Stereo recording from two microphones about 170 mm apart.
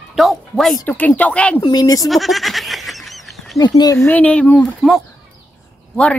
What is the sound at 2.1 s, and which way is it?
Snicker, centre (ahead or behind).